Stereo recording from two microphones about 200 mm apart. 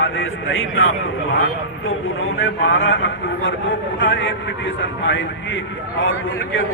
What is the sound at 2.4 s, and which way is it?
A man's voice, 75° left (ahead or behind).